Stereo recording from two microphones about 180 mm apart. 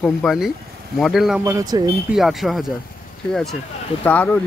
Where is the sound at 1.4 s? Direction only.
20° right (ahead or behind).